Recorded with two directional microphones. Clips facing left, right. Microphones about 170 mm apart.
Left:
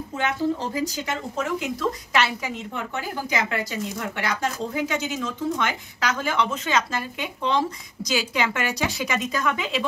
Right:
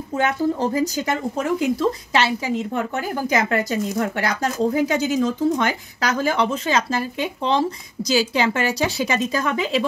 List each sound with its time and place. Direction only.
0.2 s speech: 45° right (ahead or behind)
3.3 s speech: 45° right (ahead or behind)